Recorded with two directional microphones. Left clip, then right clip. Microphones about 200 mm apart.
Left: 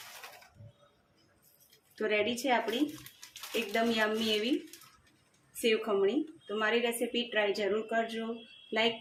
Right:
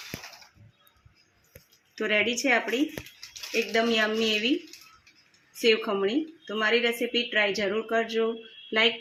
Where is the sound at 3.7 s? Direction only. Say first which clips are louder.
Right 5 dB; 35° right (ahead or behind).